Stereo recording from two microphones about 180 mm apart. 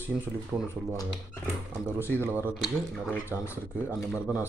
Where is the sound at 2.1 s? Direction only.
10° right (ahead or behind).